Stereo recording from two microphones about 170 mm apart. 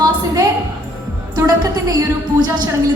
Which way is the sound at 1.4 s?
20° right (ahead or behind).